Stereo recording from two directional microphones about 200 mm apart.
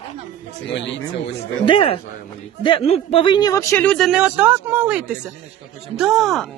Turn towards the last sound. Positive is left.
turn(degrees=0)  # may be behind; listen again after turning